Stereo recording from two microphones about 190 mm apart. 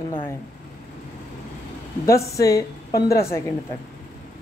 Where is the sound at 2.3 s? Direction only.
15° left (ahead or behind).